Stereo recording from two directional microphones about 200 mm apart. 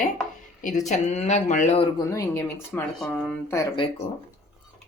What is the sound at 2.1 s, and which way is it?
Speech, 15° left (ahead or behind).